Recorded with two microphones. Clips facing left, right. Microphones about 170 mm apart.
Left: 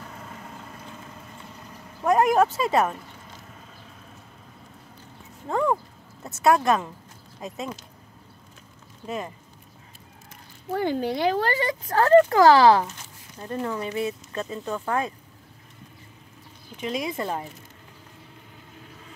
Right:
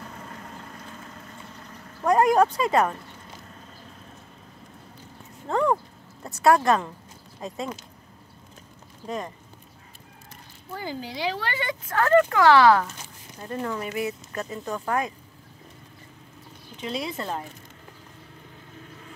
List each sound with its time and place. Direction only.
2.0 s vehicle: 20° left (ahead or behind)
2.3 s speech: 5° left (ahead or behind)
5.5 s a sound: 5° left (ahead or behind)
6.3 s speech: 20° left (ahead or behind)
9.0 s speech: 5° left (ahead or behind)
10.8 s speech: 60° left (ahead or behind); by 14.6 s 25° left (ahead or behind)
16.7 s speech: 15° left (ahead or behind)